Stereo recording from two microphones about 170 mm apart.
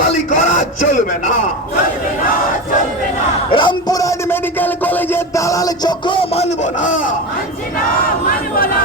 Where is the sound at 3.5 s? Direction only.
30° left (ahead or behind); by 7.1 s 50° left (ahead or behind).